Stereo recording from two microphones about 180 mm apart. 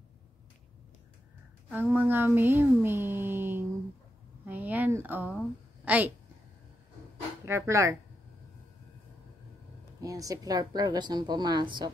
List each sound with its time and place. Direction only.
1.7 s speech: 10° right (ahead or behind)
4.5 s a sound: 10° right (ahead or behind)
5.9 s a woman's voice: 10° right (ahead or behind)
7.4 s speech: 15° right (ahead or behind)
9.9 s a woman's voice: 20° right (ahead or behind)